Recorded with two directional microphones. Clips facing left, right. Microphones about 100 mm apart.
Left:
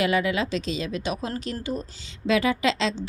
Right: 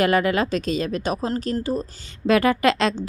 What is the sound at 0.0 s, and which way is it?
A woman's voice, 50° right (ahead or behind).